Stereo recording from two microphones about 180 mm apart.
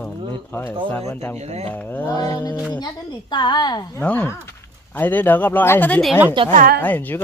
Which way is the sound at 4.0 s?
10° left (ahead or behind).